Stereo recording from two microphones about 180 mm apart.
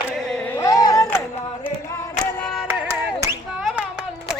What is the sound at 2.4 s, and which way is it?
Music, centre (ahead or behind).